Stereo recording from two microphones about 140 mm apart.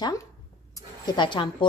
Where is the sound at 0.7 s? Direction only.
30° left (ahead or behind).